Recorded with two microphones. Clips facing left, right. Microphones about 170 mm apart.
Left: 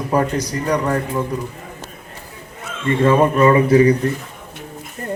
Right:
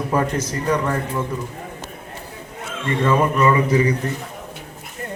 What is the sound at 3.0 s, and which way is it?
Speech, 30° left (ahead or behind).